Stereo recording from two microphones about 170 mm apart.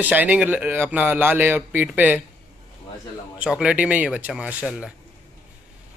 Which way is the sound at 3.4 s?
5° right (ahead or behind).